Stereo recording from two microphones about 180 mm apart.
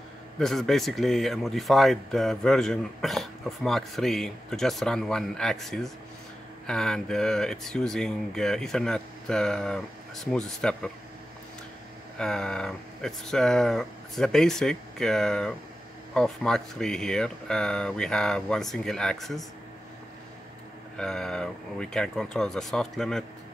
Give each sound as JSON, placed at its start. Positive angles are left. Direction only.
{"t": 0.4, "sound": "speech", "side_deg": 0}
{"t": 12.2, "sound": "speech", "side_deg": 5}
{"t": 21.0, "sound": "speech", "side_deg": 5}